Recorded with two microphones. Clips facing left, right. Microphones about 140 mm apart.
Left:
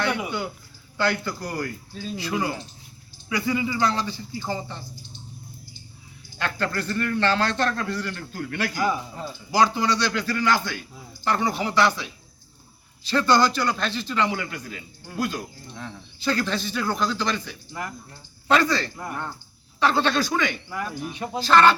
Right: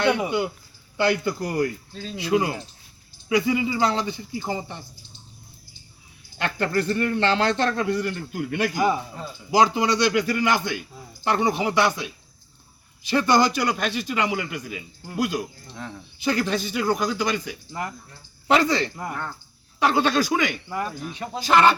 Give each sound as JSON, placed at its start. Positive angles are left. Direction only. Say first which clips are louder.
{"t": 0.3, "sound": "a man's voice", "louder": "right 5 dB", "side_deg": -15}
{"t": 6.4, "sound": "a man's voice", "louder": "right 3 dB", "side_deg": -20}
{"t": 18.4, "sound": "a man's voice", "louder": "right 1 dB", "side_deg": -20}
{"t": 21.0, "sound": "speech", "louder": "left 1 dB", "side_deg": 15}
{"t": 21.3, "sound": "a man's voice", "louder": "even", "side_deg": -15}